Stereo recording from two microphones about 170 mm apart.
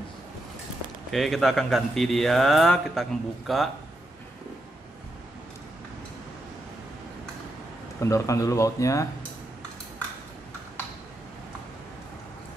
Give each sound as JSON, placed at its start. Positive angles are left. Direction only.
{"t": 1.1, "sound": "speech", "side_deg": 0}
{"t": 8.0, "sound": "speech", "side_deg": 20}